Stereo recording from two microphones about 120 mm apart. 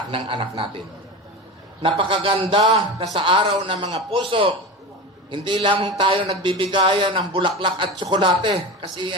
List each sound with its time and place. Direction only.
0.1 s a man's voice: 45° right (ahead or behind)
1.8 s a man's voice: 45° right (ahead or behind)